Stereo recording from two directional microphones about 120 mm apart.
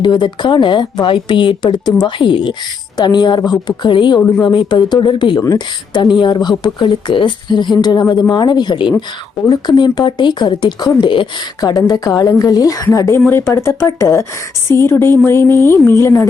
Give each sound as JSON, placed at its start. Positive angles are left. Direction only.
{"t": 0.0, "sound": "a woman's voice", "side_deg": 40}